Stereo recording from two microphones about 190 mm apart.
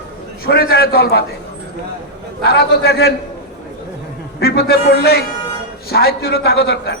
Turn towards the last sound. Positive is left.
turn(degrees=65)  # may be behind; listen again after turning